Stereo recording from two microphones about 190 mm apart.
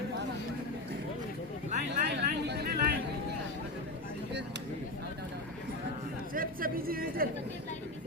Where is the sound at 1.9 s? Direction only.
60° right (ahead or behind).